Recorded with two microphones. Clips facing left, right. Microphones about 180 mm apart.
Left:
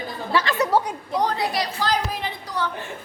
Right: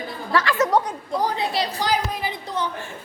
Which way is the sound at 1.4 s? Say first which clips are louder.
Even; 20° right (ahead or behind).